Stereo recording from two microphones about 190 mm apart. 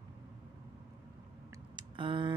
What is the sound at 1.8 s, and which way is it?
Typing, 25° right (ahead or behind).